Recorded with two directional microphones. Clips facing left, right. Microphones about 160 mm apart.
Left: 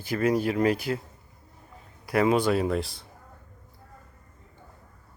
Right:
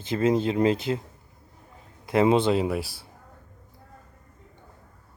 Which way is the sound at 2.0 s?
25° right (ahead or behind).